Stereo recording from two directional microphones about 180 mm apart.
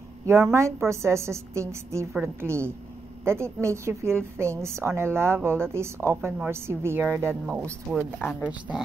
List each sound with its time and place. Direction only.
0.3 s a woman's voice: 15° right (ahead or behind)